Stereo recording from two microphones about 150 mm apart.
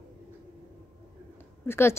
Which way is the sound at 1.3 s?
15° left (ahead or behind).